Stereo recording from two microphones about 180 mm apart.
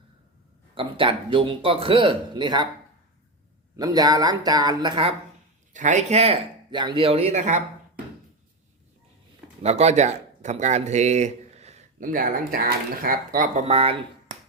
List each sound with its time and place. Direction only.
0.8 s speech: 30° right (ahead or behind)
3.8 s speech: 20° right (ahead or behind)
5.7 s speech: 40° right (ahead or behind)
9.6 s speech: 35° right (ahead or behind)
13.7 s speech: 35° right (ahead or behind)